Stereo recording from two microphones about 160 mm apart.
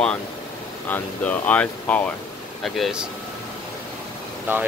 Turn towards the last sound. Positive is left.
turn(degrees=-10)  # may be behind; listen again after turning